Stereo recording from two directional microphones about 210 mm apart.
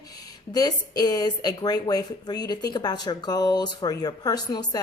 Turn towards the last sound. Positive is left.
turn(degrees=20)  # may be behind; listen again after turning